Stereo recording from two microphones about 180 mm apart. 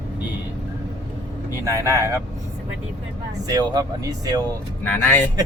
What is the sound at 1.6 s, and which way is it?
Speech, 15° right (ahead or behind).